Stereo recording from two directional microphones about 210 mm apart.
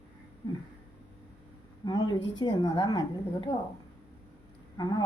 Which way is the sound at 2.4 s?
20° left (ahead or behind).